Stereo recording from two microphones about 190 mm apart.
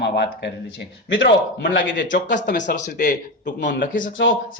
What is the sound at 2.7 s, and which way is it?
Speech, 40° left (ahead or behind).